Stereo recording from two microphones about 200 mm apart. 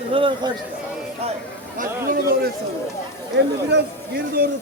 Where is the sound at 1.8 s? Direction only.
40° right (ahead or behind).